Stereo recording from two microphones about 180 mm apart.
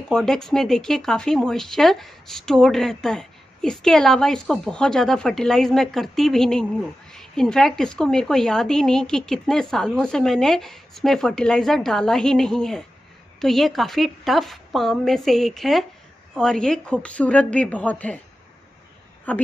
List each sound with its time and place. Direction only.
0.1 s a woman's voice: 5° left (ahead or behind)
19.3 s a woman's voice: 10° left (ahead or behind)